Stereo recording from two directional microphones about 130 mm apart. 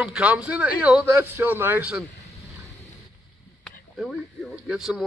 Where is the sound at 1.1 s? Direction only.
20° right (ahead or behind).